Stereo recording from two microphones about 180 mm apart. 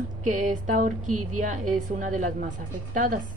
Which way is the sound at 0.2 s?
45° right (ahead or behind).